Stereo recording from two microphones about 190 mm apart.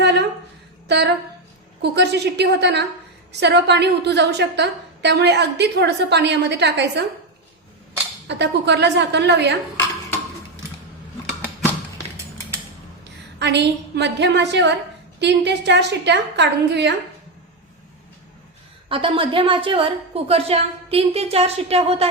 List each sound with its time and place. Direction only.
0.0 s a sound: 60° right (ahead or behind)
1.8 s a woman's voice: 60° right (ahead or behind)
8.3 s a woman's voice: 65° right (ahead or behind)
13.4 s a woman's voice: 65° right (ahead or behind)
18.9 s a woman's voice: 30° right (ahead or behind)